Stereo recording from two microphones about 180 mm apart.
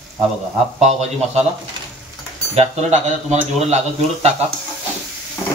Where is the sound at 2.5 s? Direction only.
35° right (ahead or behind).